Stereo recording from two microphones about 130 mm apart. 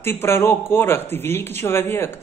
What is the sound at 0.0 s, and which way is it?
A man's voice, 20° left (ahead or behind).